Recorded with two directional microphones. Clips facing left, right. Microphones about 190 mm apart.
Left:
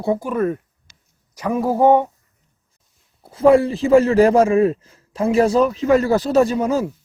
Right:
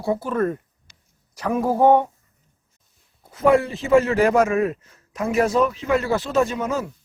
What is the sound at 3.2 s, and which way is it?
A man's voice, 30° left (ahead or behind).